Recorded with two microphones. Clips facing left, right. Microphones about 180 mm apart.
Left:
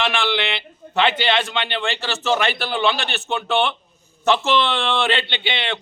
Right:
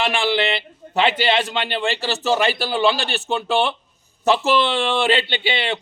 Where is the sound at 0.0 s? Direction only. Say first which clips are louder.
Right 2 dB; 35° right (ahead or behind).